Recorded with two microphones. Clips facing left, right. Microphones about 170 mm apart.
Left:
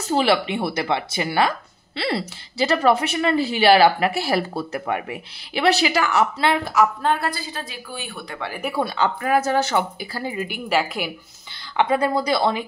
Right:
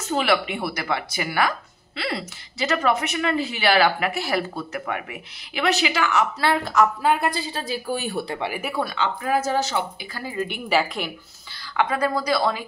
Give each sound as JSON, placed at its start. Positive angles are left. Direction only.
{"t": 0.0, "sound": "a woman's voice", "side_deg": 30}
{"t": 6.4, "sound": "speech", "side_deg": 15}
{"t": 7.0, "sound": "a woman's voice", "side_deg": -10}
{"t": 7.2, "sound": "a woman's voice", "side_deg": -20}
{"t": 7.6, "sound": "speech", "side_deg": -35}
{"t": 9.2, "sound": "speech", "side_deg": 65}
{"t": 10.1, "sound": "a woman's voice", "side_deg": 20}
{"t": 10.4, "sound": "a woman's voice", "side_deg": 0}
{"t": 11.7, "sound": "a woman's voice", "side_deg": 25}